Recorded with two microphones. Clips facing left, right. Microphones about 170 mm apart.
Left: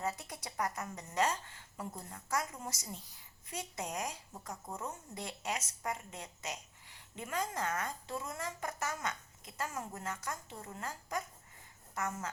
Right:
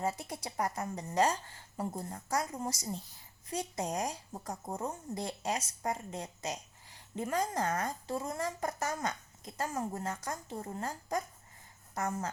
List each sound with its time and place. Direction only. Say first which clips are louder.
0.0 s speech: right 4 dB; 30° right (ahead or behind)